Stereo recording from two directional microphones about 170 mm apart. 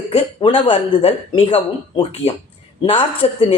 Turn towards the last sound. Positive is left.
turn(degrees=35)  # may be behind; listen again after turning